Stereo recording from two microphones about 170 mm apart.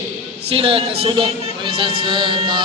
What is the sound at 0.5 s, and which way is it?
A man's voice, 35° right (ahead or behind).